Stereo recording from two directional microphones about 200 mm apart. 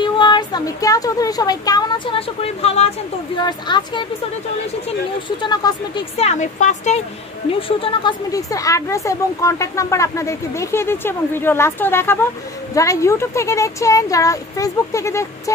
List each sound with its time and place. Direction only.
0.0 s speech: 20° left (ahead or behind)
5.4 s speech: 20° left (ahead or behind)
6.1 s speech: 35° left (ahead or behind)
7.6 s speech: 25° left (ahead or behind)